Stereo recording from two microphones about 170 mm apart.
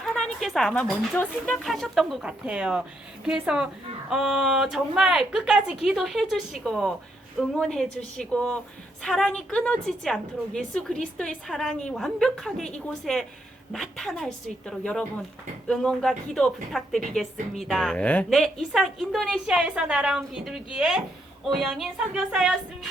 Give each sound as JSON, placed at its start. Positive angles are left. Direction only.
{"t": 0.0, "sound": "a woman's voice", "side_deg": 0}